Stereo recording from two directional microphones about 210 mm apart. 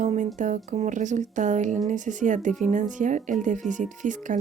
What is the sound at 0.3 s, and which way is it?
A woman's voice, 35° right (ahead or behind).